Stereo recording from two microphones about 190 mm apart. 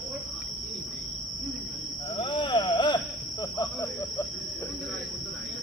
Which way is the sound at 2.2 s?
25° left (ahead or behind).